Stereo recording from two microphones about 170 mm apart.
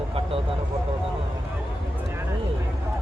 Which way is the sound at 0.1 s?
35° right (ahead or behind).